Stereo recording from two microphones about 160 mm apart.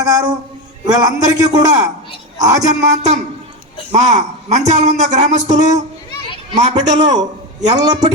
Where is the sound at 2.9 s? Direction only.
45° right (ahead or behind).